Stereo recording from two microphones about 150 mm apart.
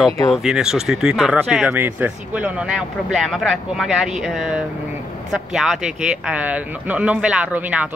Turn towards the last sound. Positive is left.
turn(degrees=-10)  # may be behind; listen again after turning